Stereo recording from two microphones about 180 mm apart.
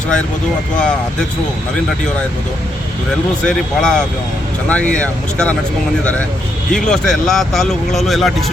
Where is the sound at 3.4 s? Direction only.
5° left (ahead or behind).